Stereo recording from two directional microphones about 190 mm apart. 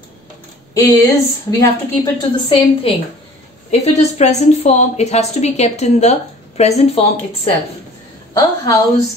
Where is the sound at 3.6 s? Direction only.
35° left (ahead or behind).